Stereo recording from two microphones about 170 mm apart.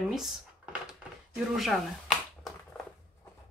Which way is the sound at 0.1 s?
Centre (ahead or behind).